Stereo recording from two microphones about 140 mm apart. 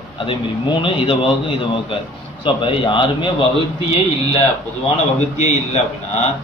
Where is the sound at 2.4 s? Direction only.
40° left (ahead or behind).